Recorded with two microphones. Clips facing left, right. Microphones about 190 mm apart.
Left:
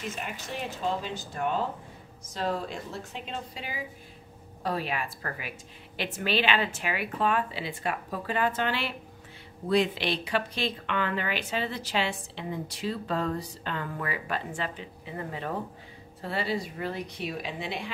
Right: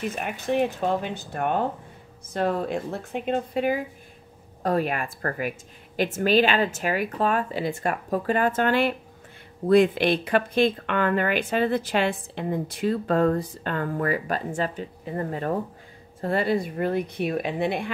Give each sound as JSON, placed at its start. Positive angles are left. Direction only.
{"t": 0.1, "sound": "a woman's voice", "side_deg": -60}